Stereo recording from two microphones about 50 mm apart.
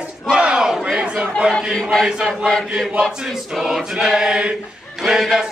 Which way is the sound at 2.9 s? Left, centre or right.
Centre.